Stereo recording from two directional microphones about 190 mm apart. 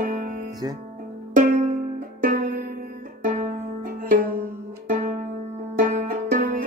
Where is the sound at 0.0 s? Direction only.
45° right (ahead or behind).